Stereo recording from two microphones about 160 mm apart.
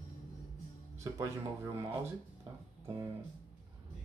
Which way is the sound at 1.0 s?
20° right (ahead or behind).